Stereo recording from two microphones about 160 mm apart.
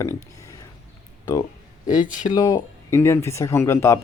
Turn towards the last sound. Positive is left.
turn(degrees=15)  # may be behind; listen again after turning